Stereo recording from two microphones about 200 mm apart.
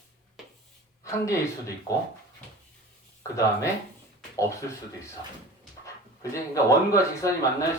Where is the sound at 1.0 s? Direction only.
15° left (ahead or behind).